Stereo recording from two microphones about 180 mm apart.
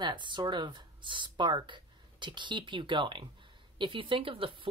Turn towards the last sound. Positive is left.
turn(degrees=-30)  # may be behind; listen again after turning